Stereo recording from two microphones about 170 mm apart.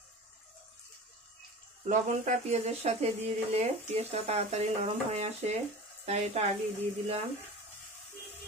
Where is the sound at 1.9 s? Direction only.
45° right (ahead or behind).